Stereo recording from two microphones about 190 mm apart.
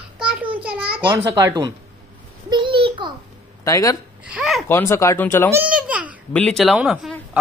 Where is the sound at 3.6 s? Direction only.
20° left (ahead or behind).